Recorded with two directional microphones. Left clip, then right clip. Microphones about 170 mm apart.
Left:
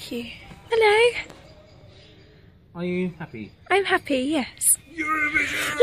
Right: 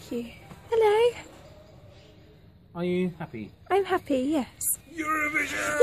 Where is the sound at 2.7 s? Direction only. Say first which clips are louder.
Even; 10° right (ahead or behind).